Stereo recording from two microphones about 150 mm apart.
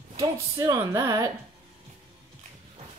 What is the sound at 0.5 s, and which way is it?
Speech, 20° right (ahead or behind).